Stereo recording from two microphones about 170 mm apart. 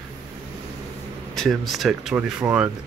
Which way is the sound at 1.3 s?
Centre (ahead or behind).